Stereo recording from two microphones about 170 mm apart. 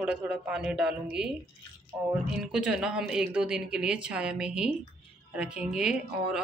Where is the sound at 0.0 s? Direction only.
5° right (ahead or behind).